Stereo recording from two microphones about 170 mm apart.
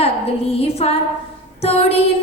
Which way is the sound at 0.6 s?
35° left (ahead or behind).